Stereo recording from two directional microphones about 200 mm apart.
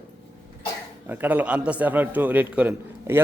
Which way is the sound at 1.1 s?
10° right (ahead or behind).